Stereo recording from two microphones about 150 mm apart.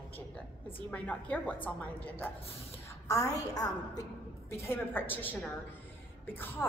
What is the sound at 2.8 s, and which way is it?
A woman's voice, 20° left (ahead or behind).